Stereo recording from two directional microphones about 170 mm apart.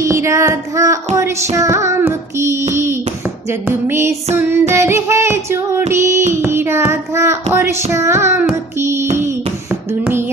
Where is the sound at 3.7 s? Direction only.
15° right (ahead or behind).